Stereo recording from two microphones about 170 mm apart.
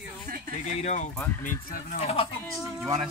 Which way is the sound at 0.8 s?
45° left (ahead or behind).